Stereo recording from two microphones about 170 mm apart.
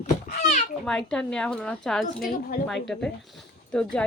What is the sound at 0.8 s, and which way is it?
A woman's voice, 5° left (ahead or behind).